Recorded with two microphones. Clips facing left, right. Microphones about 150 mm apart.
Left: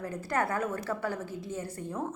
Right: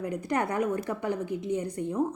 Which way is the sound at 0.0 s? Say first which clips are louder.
Right 2 dB; 15° right (ahead or behind).